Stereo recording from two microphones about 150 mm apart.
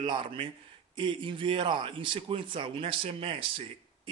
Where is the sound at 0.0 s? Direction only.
35° right (ahead or behind).